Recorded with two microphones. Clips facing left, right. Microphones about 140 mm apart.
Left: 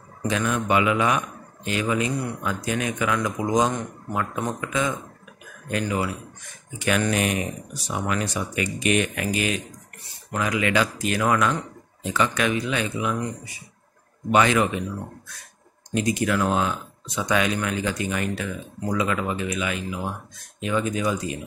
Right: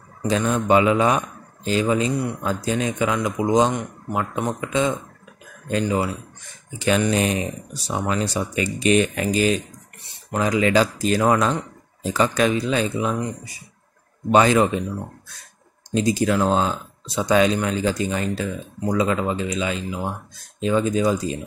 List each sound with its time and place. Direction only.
0.3 s speech: 30° right (ahead or behind)
14.3 s speech: 30° right (ahead or behind)